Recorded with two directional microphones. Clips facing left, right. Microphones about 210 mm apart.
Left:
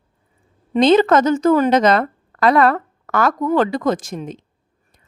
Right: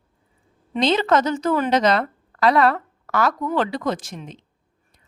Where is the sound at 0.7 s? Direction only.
50° left (ahead or behind).